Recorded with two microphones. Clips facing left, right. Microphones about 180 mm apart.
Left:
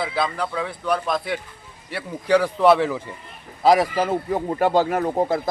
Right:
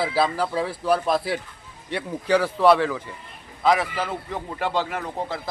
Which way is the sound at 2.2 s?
15° left (ahead or behind).